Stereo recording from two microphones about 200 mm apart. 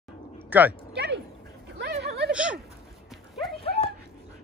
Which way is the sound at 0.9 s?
55° right (ahead or behind).